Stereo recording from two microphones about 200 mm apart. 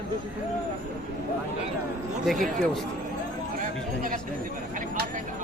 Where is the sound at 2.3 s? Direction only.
Centre (ahead or behind).